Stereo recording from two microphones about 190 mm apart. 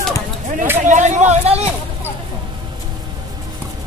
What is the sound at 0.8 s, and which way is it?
Speech, 40° right (ahead or behind).